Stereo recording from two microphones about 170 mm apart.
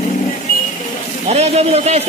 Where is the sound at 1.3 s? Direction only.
40° right (ahead or behind).